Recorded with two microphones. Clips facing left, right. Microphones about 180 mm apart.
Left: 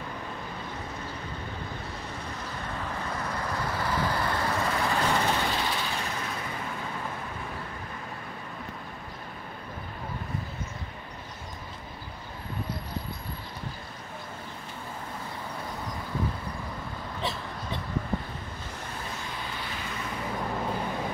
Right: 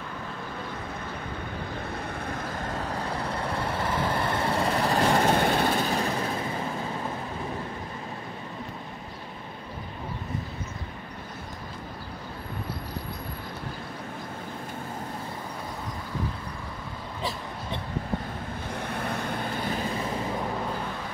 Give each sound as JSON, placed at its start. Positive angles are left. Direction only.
{"t": 2.3, "sound": "vehicle", "side_deg": -50}
{"t": 18.7, "sound": "vehicle", "side_deg": -60}